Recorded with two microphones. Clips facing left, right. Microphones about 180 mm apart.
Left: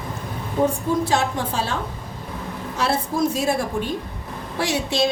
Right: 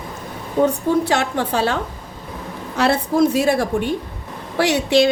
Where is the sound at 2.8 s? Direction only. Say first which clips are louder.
Right 6 dB; 65° right (ahead or behind).